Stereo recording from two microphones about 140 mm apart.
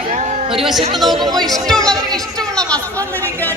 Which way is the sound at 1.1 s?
30° right (ahead or behind).